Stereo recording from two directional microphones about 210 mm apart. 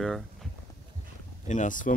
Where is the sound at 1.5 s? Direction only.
35° left (ahead or behind).